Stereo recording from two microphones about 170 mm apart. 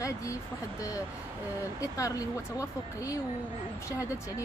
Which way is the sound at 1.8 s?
20° left (ahead or behind).